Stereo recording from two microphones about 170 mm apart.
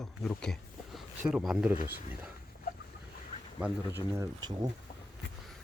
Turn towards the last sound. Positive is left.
turn(degrees=-25)  # may be behind; listen again after turning